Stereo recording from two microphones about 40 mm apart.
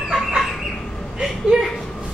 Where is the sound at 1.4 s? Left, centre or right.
Centre.